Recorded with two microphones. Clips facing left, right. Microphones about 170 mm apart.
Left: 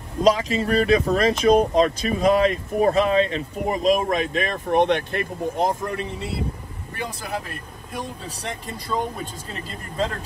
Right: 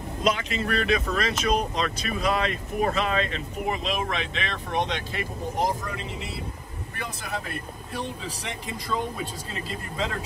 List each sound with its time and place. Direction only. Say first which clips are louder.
0.2 s speech: left 7 dB; 35° left (ahead or behind); by 5.7 s 55° left (ahead or behind)
8.4 s speech: left 3 dB; 40° left (ahead or behind)